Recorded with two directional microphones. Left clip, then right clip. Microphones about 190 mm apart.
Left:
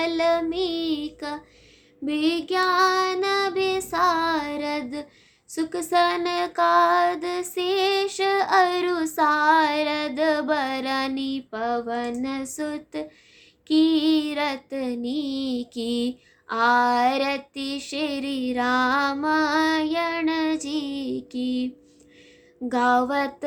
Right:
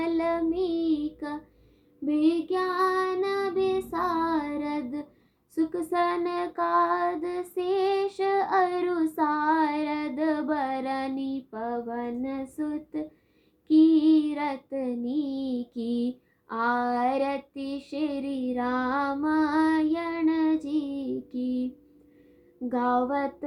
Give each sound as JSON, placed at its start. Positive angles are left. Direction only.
{"t": 0.0, "sound": "female singing", "side_deg": 35}
{"t": 2.0, "sound": "child singing", "side_deg": 25}
{"t": 2.6, "sound": "child singing", "side_deg": 5}
{"t": 2.9, "sound": "child singing", "side_deg": 25}
{"t": 5.5, "sound": "female singing", "side_deg": 35}
{"t": 22.7, "sound": "female singing", "side_deg": 35}